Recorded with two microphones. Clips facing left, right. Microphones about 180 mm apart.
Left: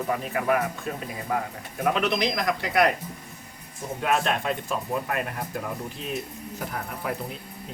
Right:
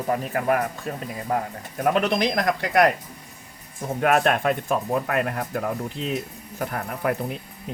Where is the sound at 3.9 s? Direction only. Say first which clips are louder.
Right 5 dB; 55° right (ahead or behind).